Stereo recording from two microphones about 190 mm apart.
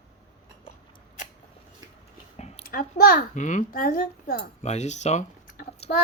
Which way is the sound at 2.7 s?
50° left (ahead or behind).